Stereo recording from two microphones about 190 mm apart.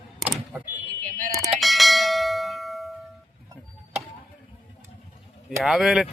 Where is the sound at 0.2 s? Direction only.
5° right (ahead or behind).